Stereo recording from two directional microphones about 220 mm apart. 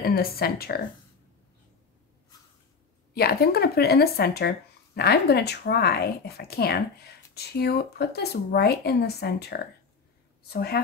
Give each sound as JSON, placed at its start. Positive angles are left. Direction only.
{"t": 0.0, "sound": "speech", "side_deg": 45}
{"t": 3.2, "sound": "speech", "side_deg": 45}